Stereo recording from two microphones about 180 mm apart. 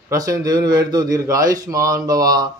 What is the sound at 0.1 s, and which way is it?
A man's voice, 20° right (ahead or behind).